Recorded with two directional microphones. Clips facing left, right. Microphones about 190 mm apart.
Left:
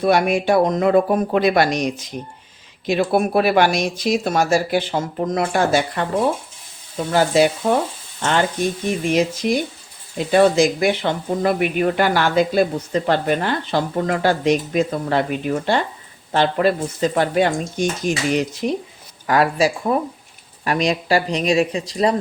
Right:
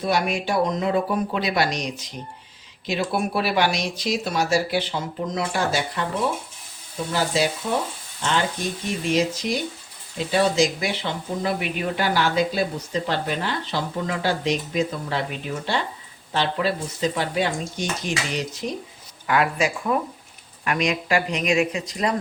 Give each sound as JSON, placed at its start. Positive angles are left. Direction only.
{"t": 0.0, "sound": "speech", "side_deg": 55}
{"t": 7.1, "sound": "frying", "side_deg": 55}
{"t": 9.1, "sound": "speech", "side_deg": 55}
{"t": 19.3, "sound": "speech", "side_deg": 35}